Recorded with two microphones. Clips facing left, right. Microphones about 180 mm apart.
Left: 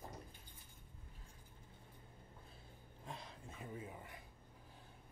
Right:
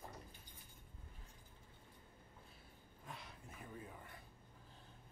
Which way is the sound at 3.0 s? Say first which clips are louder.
Left 3 dB; 30° left (ahead or behind).